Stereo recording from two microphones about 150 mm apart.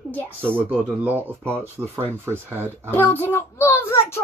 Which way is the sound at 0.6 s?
10° right (ahead or behind).